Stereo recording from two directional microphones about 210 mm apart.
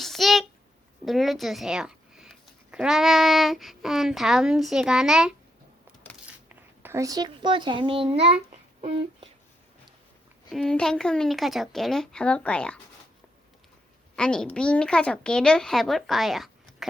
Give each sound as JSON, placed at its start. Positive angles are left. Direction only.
{"t": 0.0, "sound": "a sound", "side_deg": 0}
{"t": 2.7, "sound": "speech", "side_deg": -5}
{"t": 6.5, "sound": "a child's voice", "side_deg": -10}
{"t": 10.5, "sound": "speech", "side_deg": 5}
{"t": 14.2, "sound": "speech", "side_deg": 5}